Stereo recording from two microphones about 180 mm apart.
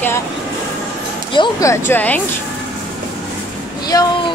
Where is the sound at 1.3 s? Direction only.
20° left (ahead or behind).